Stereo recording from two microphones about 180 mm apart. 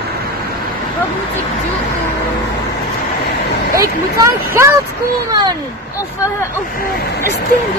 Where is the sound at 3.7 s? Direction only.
15° right (ahead or behind).